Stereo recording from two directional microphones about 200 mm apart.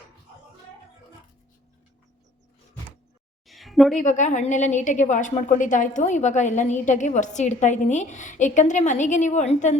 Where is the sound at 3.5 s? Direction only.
Centre (ahead or behind).